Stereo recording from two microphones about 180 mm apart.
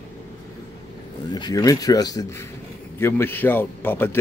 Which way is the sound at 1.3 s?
20° left (ahead or behind).